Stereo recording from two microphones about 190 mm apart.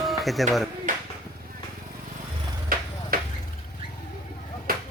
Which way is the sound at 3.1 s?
50° right (ahead or behind).